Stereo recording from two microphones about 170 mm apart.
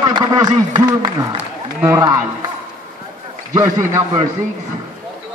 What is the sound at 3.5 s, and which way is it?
Speech, 20° right (ahead or behind).